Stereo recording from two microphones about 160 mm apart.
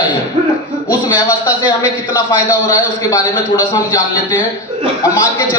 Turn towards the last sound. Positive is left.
turn(degrees=20)  # may be behind; listen again after turning